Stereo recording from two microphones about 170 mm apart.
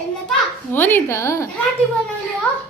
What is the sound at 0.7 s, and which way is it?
Speech, 10° left (ahead or behind).